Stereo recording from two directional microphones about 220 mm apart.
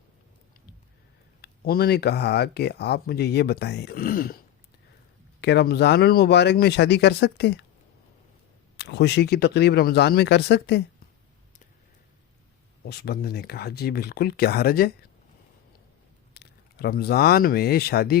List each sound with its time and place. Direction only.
1.4 s speech: 45° left (ahead or behind)
5.4 s speech: 50° left (ahead or behind)
8.8 s speech: 50° left (ahead or behind)
12.8 s speech: 45° left (ahead or behind)
16.3 s speech: 45° left (ahead or behind)